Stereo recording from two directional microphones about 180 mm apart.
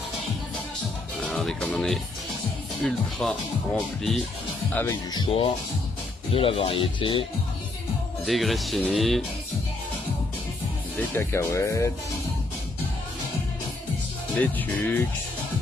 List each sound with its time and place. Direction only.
1.2 s speech: 5° left (ahead or behind)
5.1 s speech: 25° left (ahead or behind)
8.3 s speech: centre (ahead or behind)
11.0 s speech: 15° left (ahead or behind)
14.3 s speech: 5° left (ahead or behind)